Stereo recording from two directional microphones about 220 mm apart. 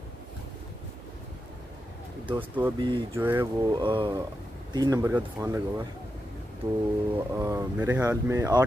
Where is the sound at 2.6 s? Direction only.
20° right (ahead or behind).